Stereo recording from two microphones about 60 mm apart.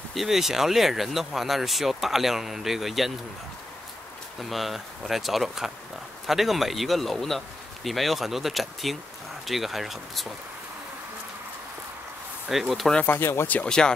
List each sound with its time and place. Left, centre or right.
0.1 s speech: centre
4.4 s speech: centre
12.4 s speech: centre
13.0 s speech: left
13.7 s speech: centre